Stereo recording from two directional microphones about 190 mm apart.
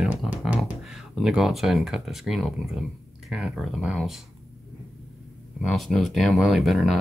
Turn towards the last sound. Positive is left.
turn(degrees=0)  # may be behind; listen again after turning